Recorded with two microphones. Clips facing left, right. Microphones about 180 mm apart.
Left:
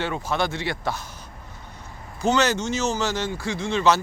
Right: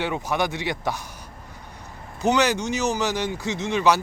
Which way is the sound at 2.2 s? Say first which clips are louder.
Even; 15° right (ahead or behind).